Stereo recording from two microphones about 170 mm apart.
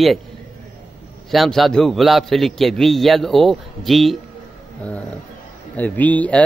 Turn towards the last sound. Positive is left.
turn(degrees=10)  # may be behind; listen again after turning